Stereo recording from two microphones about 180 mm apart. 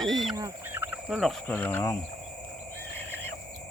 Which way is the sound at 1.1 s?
5° left (ahead or behind).